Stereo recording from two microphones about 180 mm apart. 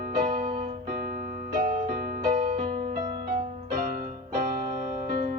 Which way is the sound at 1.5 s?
55° right (ahead or behind).